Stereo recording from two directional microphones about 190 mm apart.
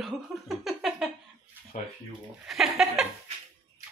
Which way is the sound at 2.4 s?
Centre (ahead or behind).